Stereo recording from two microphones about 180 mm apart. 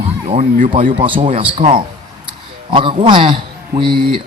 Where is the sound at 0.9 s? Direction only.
30° right (ahead or behind).